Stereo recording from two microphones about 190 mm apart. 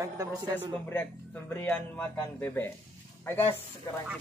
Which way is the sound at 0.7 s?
10° left (ahead or behind).